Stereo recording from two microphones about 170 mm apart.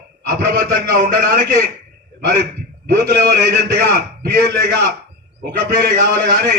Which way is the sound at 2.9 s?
65° right (ahead or behind).